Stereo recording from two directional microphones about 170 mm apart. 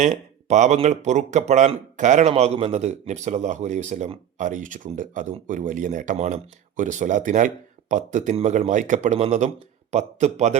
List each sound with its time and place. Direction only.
0.0 s a man's voice: 45° right (ahead or behind)